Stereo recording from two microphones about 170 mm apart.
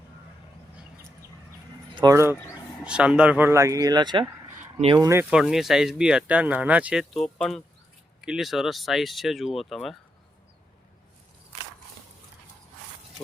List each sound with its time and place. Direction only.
2.0 s speech: 20° right (ahead or behind)
5.3 s speech: centre (ahead or behind)